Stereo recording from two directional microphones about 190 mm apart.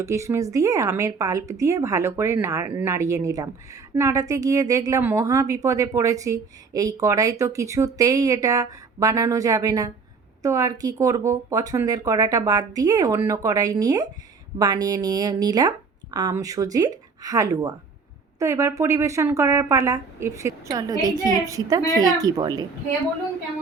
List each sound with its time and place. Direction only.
0.0 s speech: 15° right (ahead or behind)